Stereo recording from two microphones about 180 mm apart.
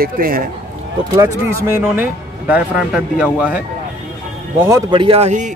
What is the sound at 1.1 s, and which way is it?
Speech, 15° right (ahead or behind).